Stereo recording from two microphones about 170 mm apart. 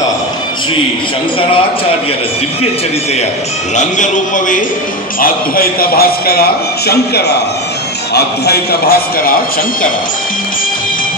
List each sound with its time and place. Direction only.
3.7 s a man's voice: 45° left (ahead or behind)
5.2 s a man's voice: 60° left (ahead or behind)